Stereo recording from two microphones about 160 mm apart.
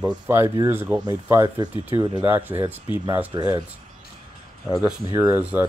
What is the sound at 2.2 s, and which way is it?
Speech, 10° right (ahead or behind).